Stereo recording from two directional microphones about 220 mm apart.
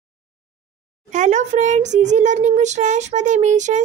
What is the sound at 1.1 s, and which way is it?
A child's voice, 35° right (ahead or behind).